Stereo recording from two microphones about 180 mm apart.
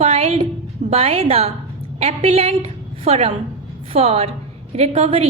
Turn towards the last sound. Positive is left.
turn(degrees=-35)  # may be behind; listen again after turning